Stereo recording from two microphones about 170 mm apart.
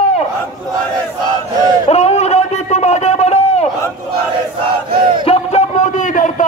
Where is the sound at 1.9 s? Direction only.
40° left (ahead or behind).